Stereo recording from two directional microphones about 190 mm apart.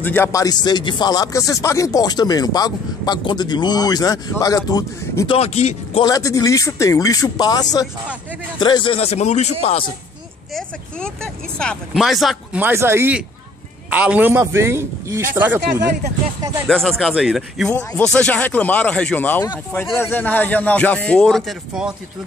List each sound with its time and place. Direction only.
0.0 s speech: 10° left (ahead or behind)
5.4 s speech: 35° left (ahead or behind)
6.0 s speech: 20° left (ahead or behind); by 9.8 s 35° left (ahead or behind)
11.5 s speech: 5° left (ahead or behind)
12.6 s a man's voice: 10° right (ahead or behind)
16.6 s a man's voice: centre (ahead or behind)